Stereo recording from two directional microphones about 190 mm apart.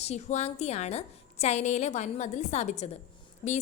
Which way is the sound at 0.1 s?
35° left (ahead or behind).